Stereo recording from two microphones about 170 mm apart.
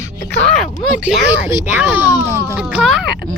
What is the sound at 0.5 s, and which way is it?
Speech, centre (ahead or behind).